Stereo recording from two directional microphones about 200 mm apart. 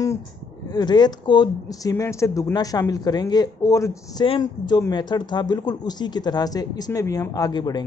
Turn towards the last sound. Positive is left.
turn(degrees=20)  # may be behind; listen again after turning